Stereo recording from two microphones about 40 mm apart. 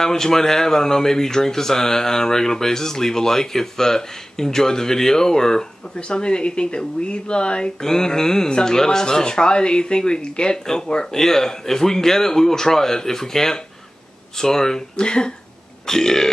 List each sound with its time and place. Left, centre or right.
0.0 s speech: centre
7.8 s speech: centre